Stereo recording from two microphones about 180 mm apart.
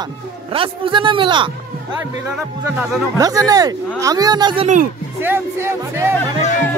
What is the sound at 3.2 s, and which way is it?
Speech, 20° right (ahead or behind).